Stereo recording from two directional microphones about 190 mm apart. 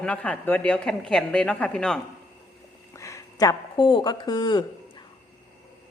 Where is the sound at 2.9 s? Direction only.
15° left (ahead or behind).